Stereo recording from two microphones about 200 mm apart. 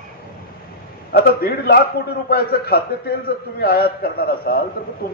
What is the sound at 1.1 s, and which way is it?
Speech, 50° left (ahead or behind).